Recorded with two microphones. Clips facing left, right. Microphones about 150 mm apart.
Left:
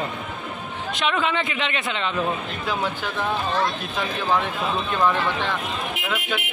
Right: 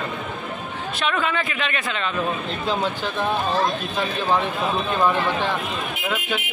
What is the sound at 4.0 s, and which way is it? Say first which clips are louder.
Speech: right 1 dB; 15° right (ahead or behind).